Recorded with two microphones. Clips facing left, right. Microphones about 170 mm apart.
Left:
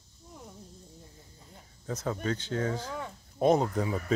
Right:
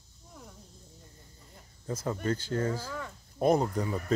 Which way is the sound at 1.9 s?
Centre (ahead or behind).